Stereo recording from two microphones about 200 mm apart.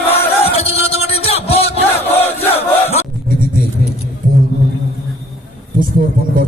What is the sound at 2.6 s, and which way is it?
Battle cry, 30° left (ahead or behind).